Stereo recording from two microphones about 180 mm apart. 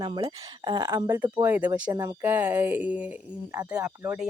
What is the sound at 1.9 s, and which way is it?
Speech, 20° right (ahead or behind).